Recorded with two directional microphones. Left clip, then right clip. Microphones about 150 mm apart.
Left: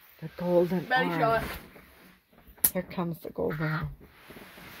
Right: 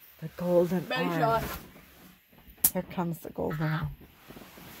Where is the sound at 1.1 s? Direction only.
20° right (ahead or behind).